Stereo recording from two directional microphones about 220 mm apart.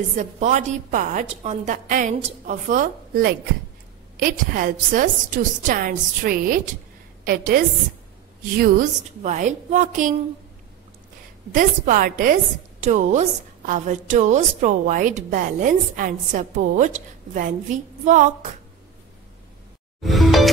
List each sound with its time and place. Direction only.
0.1 s a woman's voice: 30° right (ahead or behind)
11.5 s a woman's voice: 40° right (ahead or behind)
20.0 s music: centre (ahead or behind)